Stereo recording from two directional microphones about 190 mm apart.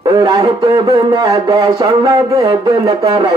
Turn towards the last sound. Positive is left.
turn(degrees=-20)  # may be behind; listen again after turning